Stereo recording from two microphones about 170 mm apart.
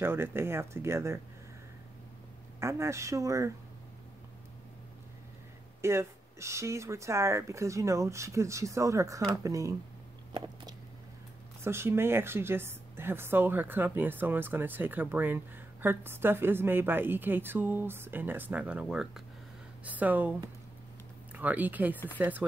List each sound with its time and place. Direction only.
0.0 s a woman's voice: 15° right (ahead or behind)
2.6 s a woman's voice: 15° right (ahead or behind)
5.8 s a woman's voice: 15° right (ahead or behind)
11.6 s a woman's voice: 15° right (ahead or behind)
21.3 s speech: 10° right (ahead or behind)